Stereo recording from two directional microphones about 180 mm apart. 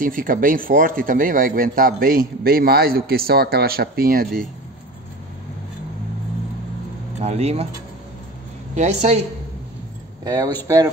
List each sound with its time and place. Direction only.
0.0 s a man's voice: 50° right (ahead or behind)
7.2 s a woman's voice: 40° right (ahead or behind)
8.7 s a woman's voice: 35° right (ahead or behind)
10.2 s speech: 20° right (ahead or behind)